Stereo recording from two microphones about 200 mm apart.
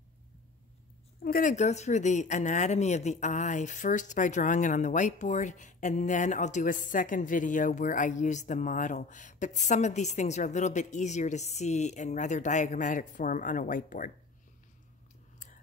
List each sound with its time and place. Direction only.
1.2 s speech: 45° left (ahead or behind)